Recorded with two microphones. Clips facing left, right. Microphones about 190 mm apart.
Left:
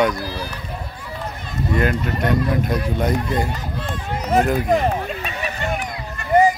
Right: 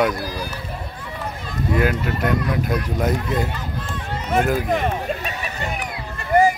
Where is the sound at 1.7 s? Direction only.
5° right (ahead or behind).